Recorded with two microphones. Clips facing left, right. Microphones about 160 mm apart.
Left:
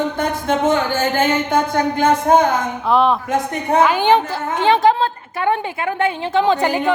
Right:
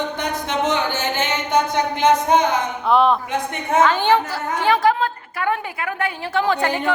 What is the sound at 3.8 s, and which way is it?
A woman's voice, 10° left (ahead or behind).